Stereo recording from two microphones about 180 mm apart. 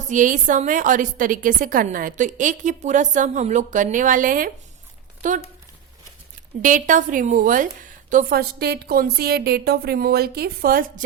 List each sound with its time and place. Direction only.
0.1 s a woman's voice: 45° right (ahead or behind)
6.6 s a woman's voice: 45° right (ahead or behind)